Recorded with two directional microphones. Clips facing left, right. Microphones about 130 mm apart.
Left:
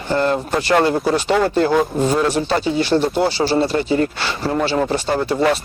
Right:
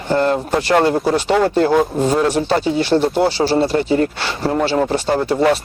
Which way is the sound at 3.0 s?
20° right (ahead or behind).